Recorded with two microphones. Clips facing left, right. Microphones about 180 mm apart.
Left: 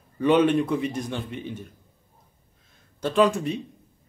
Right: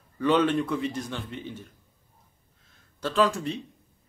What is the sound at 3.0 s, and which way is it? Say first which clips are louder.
Speech: left 4 dB; 20° left (ahead or behind).